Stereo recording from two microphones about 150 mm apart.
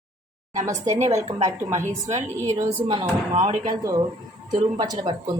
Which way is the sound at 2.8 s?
35° right (ahead or behind).